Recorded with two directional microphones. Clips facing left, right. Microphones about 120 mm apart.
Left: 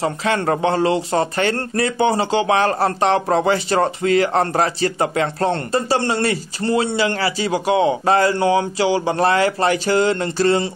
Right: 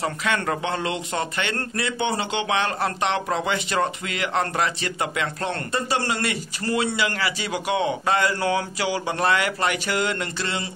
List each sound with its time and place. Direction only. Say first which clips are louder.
0.0 s speech: left 5 dB; 30° left (ahead or behind)